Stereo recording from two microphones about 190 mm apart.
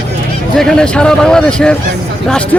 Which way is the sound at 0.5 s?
Centre (ahead or behind).